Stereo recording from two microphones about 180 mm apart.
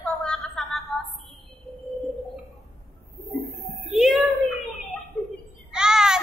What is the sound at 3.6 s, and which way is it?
Child singing, centre (ahead or behind).